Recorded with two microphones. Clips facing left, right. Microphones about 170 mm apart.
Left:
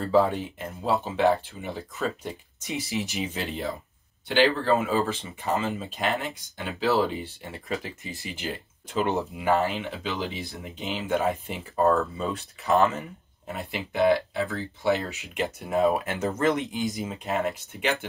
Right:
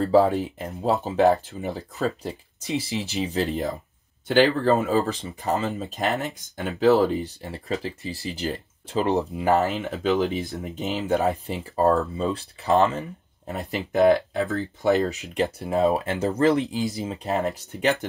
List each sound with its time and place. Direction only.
0.0 s speech: 40° right (ahead or behind)
13.5 s speech: 40° right (ahead or behind)